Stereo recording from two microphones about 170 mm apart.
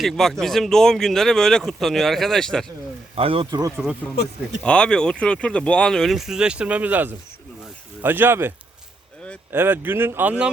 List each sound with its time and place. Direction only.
0.0 s speech: centre (ahead or behind)
3.2 s speech: 30° right (ahead or behind)
3.8 s speech: 5° right (ahead or behind)